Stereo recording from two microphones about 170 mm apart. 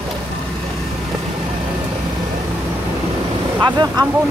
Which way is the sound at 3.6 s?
25° right (ahead or behind).